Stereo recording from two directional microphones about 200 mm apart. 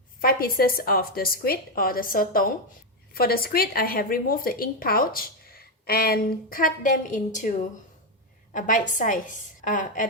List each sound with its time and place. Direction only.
0.2 s speech: 45° left (ahead or behind)
8.5 s a woman's voice: 40° left (ahead or behind)